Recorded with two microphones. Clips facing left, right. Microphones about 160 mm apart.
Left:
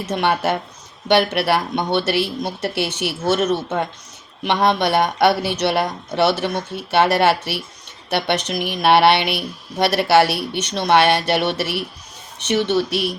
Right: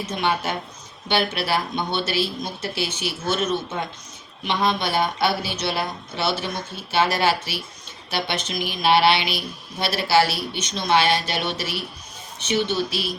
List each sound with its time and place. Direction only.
0.0 s speech: 70° left (ahead or behind)